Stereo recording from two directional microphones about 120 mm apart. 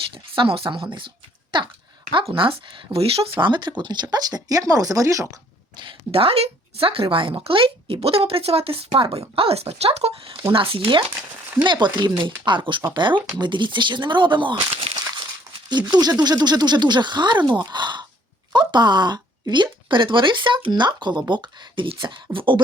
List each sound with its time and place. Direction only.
0.3 s speech: 45° right (ahead or behind)
1.5 s dog: 40° right (ahead or behind)
2.3 s speech: 45° right (ahead or behind); by 5.4 s 25° right (ahead or behind)
5.8 s speech: 50° right (ahead or behind)
10.5 s speech: 50° right (ahead or behind)
15.9 s speech: 35° right (ahead or behind)